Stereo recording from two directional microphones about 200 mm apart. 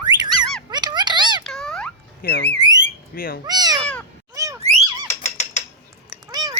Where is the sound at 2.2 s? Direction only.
50° left (ahead or behind).